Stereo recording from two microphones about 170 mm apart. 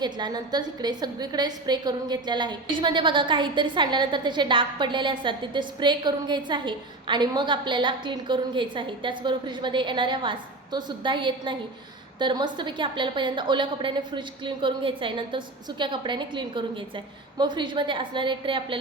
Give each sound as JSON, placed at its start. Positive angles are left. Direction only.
{"t": 0.0, "sound": "a woman's voice", "side_deg": -25}